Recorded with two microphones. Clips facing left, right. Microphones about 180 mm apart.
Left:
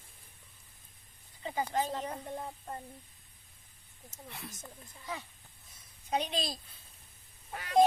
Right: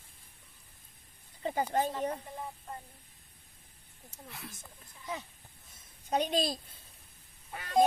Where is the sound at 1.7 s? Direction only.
50° right (ahead or behind).